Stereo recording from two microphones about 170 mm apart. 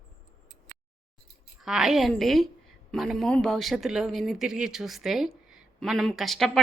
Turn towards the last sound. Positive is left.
turn(degrees=0)  # may be behind; listen again after turning